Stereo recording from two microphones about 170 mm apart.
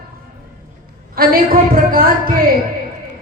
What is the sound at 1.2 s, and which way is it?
Speech, 60° right (ahead or behind).